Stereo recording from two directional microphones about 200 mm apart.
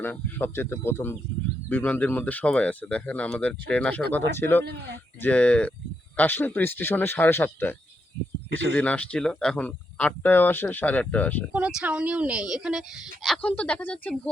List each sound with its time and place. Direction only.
0.0 s speech: 10° left (ahead or behind)
4.6 s speech: 55° right (ahead or behind)
5.2 s speech: 5° left (ahead or behind)
11.5 s speech: 5° right (ahead or behind)